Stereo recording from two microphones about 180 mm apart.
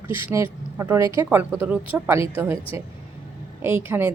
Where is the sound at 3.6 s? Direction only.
15° right (ahead or behind).